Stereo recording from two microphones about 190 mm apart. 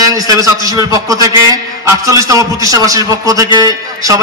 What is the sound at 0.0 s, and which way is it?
A man's voice, 20° right (ahead or behind).